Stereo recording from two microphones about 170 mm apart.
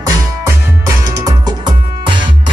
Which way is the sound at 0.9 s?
20° right (ahead or behind).